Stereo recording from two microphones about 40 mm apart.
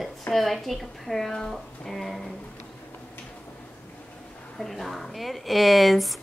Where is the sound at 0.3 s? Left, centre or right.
Centre.